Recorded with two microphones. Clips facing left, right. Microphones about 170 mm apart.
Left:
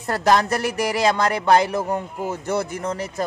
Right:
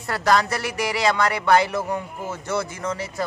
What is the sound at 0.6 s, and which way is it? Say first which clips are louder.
Speech: left 3 dB; 45° left (ahead or behind).